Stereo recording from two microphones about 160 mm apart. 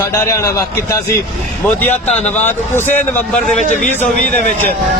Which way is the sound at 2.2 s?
15° left (ahead or behind).